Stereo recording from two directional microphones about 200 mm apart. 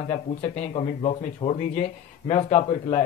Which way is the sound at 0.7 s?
30° left (ahead or behind).